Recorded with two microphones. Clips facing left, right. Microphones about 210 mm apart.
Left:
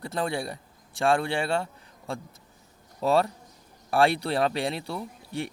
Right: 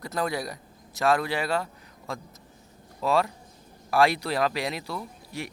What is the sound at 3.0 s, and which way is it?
Speech, 35° left (ahead or behind).